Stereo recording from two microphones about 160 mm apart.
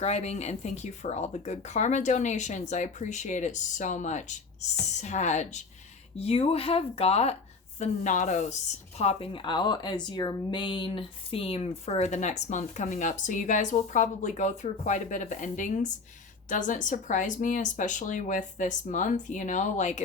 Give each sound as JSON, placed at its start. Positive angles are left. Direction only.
{"t": 0.0, "sound": "a woman's voice", "side_deg": 45}